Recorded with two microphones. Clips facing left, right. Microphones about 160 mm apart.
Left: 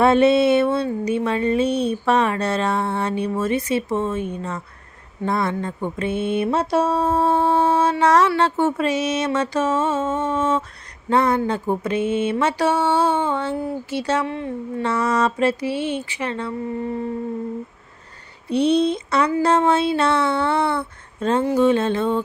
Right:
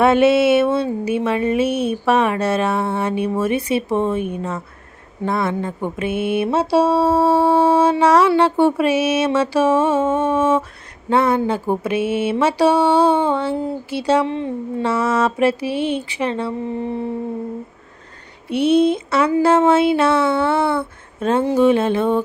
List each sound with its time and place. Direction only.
0.0 s speech: 5° right (ahead or behind)
0.7 s a woman's voice: 20° right (ahead or behind)
1.2 s speech: 10° right (ahead or behind)
11.9 s a sound: 90° right
12.3 s speech: 10° right (ahead or behind)
14.3 s a woman's voice: 25° right (ahead or behind)
14.8 s speech: 10° right (ahead or behind)
18.4 s speech: 5° right (ahead or behind)